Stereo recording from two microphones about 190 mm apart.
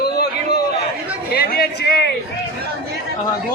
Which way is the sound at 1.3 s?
55° left (ahead or behind).